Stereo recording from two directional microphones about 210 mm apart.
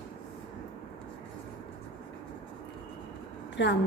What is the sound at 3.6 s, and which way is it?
Speech, 60° left (ahead or behind).